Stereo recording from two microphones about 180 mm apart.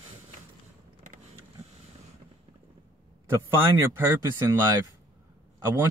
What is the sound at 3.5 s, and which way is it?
Speech, 15° right (ahead or behind).